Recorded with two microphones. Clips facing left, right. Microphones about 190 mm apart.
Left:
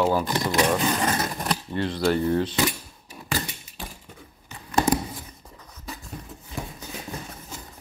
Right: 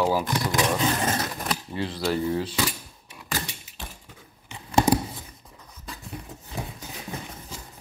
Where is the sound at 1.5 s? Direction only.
5° right (ahead or behind).